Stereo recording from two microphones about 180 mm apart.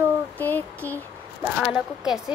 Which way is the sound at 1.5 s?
5° right (ahead or behind).